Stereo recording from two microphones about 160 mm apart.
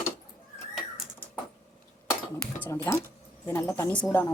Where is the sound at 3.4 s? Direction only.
15° left (ahead or behind).